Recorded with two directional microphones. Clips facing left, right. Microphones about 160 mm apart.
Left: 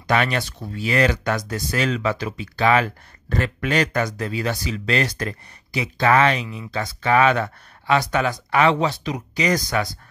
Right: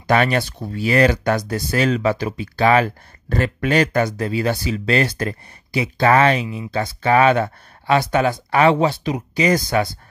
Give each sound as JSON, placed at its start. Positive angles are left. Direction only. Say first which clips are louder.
{"t": 0.0, "sound": "speech", "louder": "right 4 dB", "side_deg": -35}
{"t": 6.4, "sound": "speech", "louder": "right 5 dB", "side_deg": -10}
{"t": 6.7, "sound": "speech", "louder": "right 3 dB", "side_deg": -30}